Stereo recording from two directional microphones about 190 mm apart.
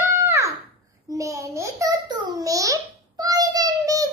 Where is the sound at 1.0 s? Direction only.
15° right (ahead or behind).